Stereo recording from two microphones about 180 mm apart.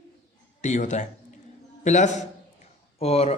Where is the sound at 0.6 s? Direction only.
40° left (ahead or behind).